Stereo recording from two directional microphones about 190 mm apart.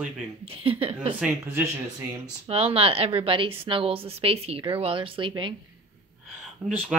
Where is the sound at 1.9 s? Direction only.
30° right (ahead or behind).